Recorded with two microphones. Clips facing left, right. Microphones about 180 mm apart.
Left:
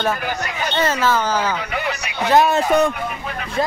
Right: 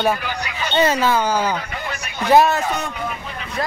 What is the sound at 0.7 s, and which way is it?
Speech, 15° right (ahead or behind).